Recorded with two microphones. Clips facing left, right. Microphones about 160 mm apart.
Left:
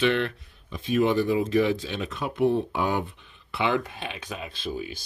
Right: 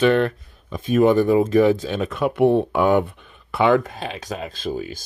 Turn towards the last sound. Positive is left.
turn(degrees=-45)  # may be behind; listen again after turning